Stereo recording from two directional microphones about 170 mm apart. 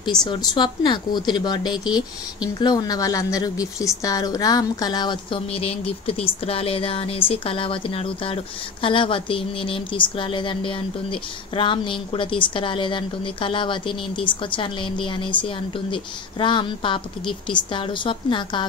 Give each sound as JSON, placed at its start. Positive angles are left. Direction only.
{"t": 0.2, "sound": "speech", "side_deg": 25}